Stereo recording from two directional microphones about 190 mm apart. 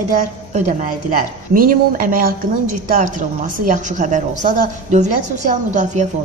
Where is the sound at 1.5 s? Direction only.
45° right (ahead or behind).